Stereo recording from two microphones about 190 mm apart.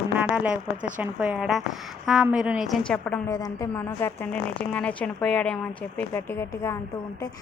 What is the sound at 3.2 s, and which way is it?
A woman's voice, 20° left (ahead or behind).